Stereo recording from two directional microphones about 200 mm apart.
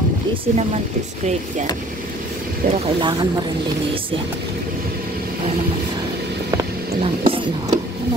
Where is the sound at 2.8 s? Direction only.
20° right (ahead or behind).